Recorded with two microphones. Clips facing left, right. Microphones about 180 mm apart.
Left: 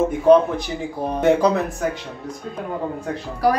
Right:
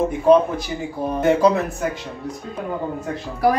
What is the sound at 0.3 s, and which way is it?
A man's voice, centre (ahead or behind).